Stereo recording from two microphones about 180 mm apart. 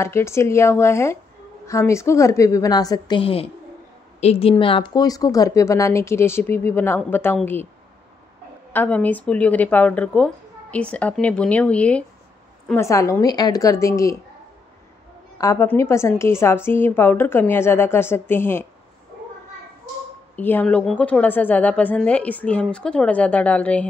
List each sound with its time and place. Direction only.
0.0 s a woman's voice: 15° left (ahead or behind)
8.7 s a woman's voice: 10° left (ahead or behind)
15.3 s a woman's voice: 15° left (ahead or behind)
20.3 s a woman's voice: 10° left (ahead or behind)